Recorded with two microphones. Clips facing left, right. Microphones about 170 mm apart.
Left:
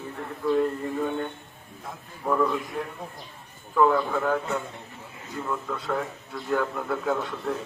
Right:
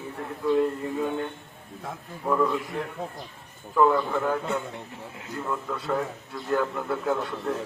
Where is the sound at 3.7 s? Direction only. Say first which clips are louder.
Even; 5° right (ahead or behind).